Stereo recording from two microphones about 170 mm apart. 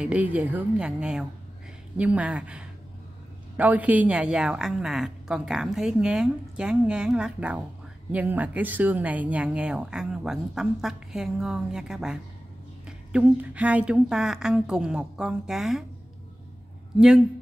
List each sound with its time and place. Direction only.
0.0 s a woman's voice: 10° right (ahead or behind)